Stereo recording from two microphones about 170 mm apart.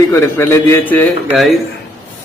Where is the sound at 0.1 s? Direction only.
15° left (ahead or behind).